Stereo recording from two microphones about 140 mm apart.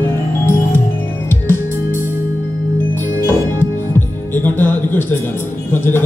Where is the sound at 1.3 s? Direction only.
15° left (ahead or behind).